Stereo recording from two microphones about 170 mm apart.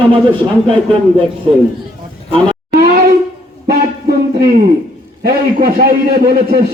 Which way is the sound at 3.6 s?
65° right (ahead or behind).